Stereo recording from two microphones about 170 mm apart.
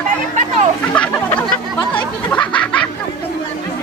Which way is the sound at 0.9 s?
10° left (ahead or behind).